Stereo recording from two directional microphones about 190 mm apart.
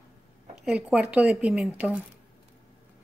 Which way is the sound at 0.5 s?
5° right (ahead or behind).